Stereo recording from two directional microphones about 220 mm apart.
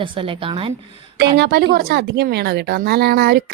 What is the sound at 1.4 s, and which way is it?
A woman's voice, 50° right (ahead or behind).